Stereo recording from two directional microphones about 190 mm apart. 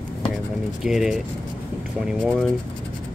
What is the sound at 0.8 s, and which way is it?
Speech, centre (ahead or behind).